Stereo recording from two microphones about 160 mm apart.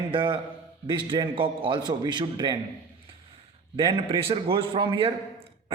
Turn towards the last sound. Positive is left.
turn(degrees=-35)  # may be behind; listen again after turning